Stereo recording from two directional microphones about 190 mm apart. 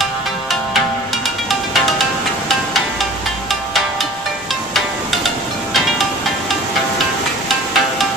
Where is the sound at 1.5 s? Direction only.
Centre (ahead or behind).